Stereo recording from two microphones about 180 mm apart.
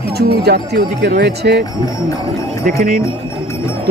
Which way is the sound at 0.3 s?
65° right (ahead or behind).